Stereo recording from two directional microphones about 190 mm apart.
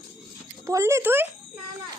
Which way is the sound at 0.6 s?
15° right (ahead or behind).